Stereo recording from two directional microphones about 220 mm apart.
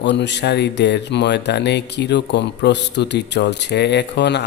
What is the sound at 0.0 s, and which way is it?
Speech, 50° left (ahead or behind).